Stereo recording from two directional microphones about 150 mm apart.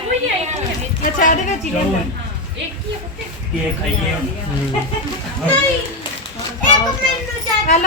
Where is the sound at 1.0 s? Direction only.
65° left (ahead or behind).